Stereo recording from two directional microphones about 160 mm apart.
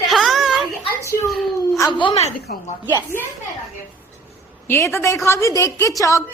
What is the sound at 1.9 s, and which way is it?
Speech, 30° left (ahead or behind).